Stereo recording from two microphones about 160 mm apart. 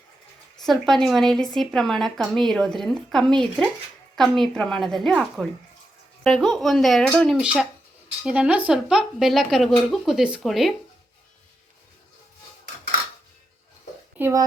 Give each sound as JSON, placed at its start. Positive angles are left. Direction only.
{"t": 0.6, "sound": "speech", "side_deg": 0}
{"t": 14.2, "sound": "a woman's voice", "side_deg": -15}